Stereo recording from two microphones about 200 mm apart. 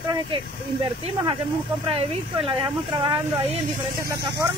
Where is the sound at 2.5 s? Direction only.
25° right (ahead or behind).